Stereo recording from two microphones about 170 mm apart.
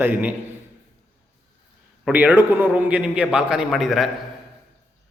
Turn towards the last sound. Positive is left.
turn(degrees=0)  # may be behind; listen again after turning